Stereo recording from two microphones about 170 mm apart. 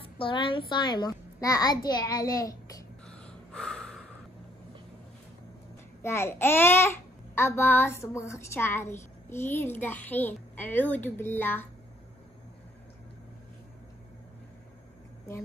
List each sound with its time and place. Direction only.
0.2 s a child's voice: 30° left (ahead or behind)
3.1 s gasp: 5° left (ahead or behind)
6.0 s a child's voice: 15° left (ahead or behind)